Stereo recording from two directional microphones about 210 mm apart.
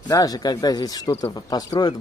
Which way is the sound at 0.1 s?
15° left (ahead or behind).